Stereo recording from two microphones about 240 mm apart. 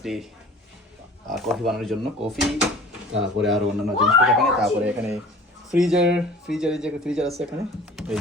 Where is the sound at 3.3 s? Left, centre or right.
Centre.